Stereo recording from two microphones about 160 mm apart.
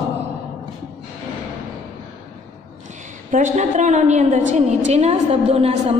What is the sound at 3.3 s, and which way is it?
A woman's voice, 50° right (ahead or behind).